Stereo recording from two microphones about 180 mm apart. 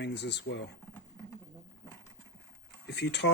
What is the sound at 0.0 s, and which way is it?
Speech, 75° left (ahead or behind).